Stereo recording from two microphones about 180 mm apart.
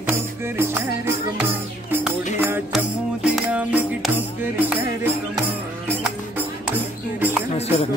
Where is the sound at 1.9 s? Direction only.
10° right (ahead or behind).